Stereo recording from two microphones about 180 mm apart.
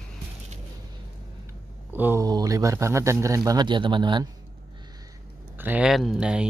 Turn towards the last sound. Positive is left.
turn(degrees=-5)  # may be behind; listen again after turning